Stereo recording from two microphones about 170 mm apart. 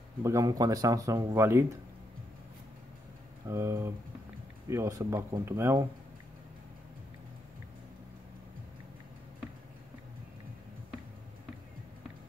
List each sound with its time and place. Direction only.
0.2 s speech: 20° right (ahead or behind)
3.4 s speech: 15° right (ahead or behind)